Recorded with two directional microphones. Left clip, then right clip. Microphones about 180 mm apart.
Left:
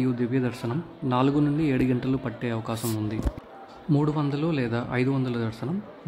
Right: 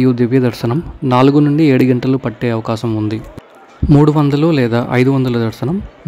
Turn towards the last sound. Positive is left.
turn(degrees=-45)  # may be behind; listen again after turning